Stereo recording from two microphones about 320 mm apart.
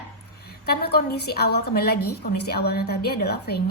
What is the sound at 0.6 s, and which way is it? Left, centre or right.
A woman's voice, left.